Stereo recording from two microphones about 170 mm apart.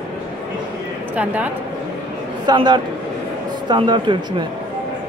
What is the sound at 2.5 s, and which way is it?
Speech, 25° right (ahead or behind).